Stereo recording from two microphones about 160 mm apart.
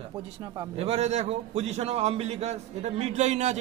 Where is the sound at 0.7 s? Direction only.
40° right (ahead or behind).